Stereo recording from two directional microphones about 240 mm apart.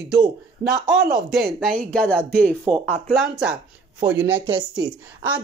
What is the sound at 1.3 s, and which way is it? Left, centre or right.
Speech, centre.